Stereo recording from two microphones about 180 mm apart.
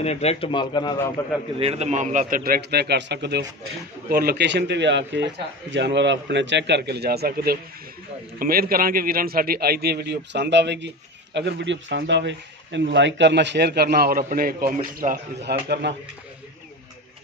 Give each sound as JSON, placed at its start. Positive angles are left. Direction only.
{"t": 0.0, "sound": "a man's voice", "side_deg": 35}
{"t": 1.6, "sound": "a man's voice", "side_deg": -35}
{"t": 15.0, "sound": "speech", "side_deg": -40}
{"t": 15.5, "sound": "a man's voice", "side_deg": -60}
{"t": 15.8, "sound": "a man's voice", "side_deg": -80}